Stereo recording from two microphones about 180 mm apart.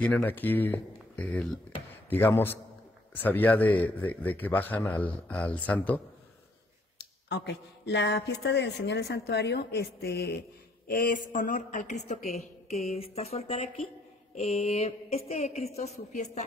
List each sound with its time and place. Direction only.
0.0 s a man's voice: 10° left (ahead or behind)
7.0 s speech: 70° left (ahead or behind)
10.9 s a woman's voice: 50° left (ahead or behind)